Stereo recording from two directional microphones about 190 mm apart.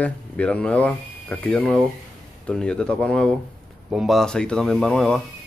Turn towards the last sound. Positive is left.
turn(degrees=5)  # may be behind; listen again after turning